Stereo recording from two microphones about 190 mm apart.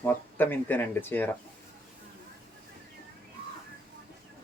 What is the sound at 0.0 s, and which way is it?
Speech, 10° left (ahead or behind).